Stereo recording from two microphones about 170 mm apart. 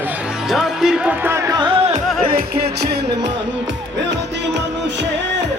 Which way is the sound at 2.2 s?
65° right (ahead or behind).